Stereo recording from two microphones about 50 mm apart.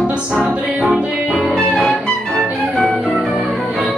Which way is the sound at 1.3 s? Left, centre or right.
Centre.